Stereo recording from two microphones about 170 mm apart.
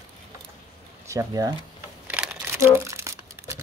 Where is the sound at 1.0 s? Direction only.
20° right (ahead or behind).